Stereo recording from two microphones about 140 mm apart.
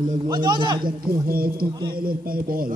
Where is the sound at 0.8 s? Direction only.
90° right.